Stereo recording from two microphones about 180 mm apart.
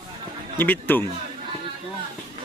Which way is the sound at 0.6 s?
10° left (ahead or behind).